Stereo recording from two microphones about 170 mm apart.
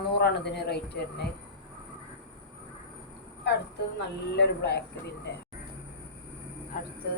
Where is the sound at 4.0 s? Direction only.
85° left.